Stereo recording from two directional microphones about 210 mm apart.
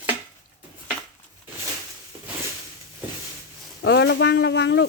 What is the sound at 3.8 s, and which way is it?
Speech, 55° left (ahead or behind).